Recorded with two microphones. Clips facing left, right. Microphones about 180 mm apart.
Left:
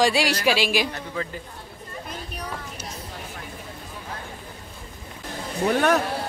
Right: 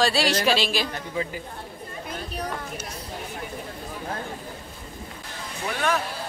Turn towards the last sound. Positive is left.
turn(degrees=40)  # may be behind; listen again after turning